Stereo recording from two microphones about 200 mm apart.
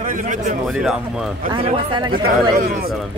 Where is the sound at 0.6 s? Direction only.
Centre (ahead or behind).